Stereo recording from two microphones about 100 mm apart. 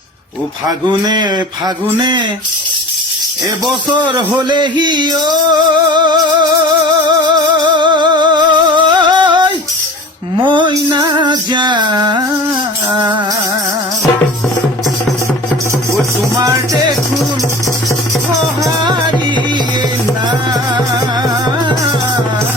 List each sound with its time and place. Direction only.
0.9 s music: 50° right (ahead or behind)
4.4 s music: 50° right (ahead or behind)
16.3 s music: 30° right (ahead or behind)
18.6 s music: 45° right (ahead or behind)